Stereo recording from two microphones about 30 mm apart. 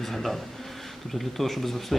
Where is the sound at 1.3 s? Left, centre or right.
Centre.